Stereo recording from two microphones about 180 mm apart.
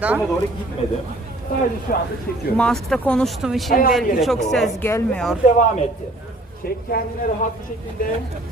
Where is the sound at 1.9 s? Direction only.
50° left (ahead or behind).